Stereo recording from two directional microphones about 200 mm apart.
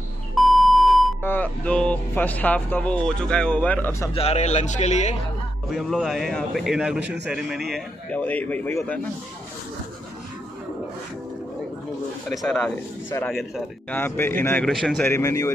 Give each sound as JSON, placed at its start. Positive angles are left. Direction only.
{"t": 0.3, "sound": "beep", "side_deg": 0}
{"t": 1.2, "sound": "speech", "side_deg": 10}
{"t": 4.1, "sound": "a man's voice", "side_deg": 30}
{"t": 5.7, "sound": "a man's voice", "side_deg": 0}
{"t": 7.0, "sound": "a man's voice", "side_deg": -60}
{"t": 7.2, "sound": "a man's voice", "side_deg": -5}
{"t": 7.7, "sound": "speech", "side_deg": 5}
{"t": 12.3, "sound": "a man's voice", "side_deg": 0}
{"t": 13.9, "sound": "speech", "side_deg": 10}
{"t": 15.0, "sound": "speech", "side_deg": 15}